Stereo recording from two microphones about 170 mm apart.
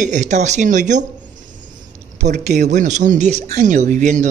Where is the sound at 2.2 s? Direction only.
45° right (ahead or behind).